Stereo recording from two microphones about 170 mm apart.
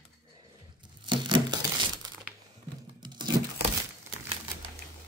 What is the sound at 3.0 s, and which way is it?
Tearing, 25° right (ahead or behind).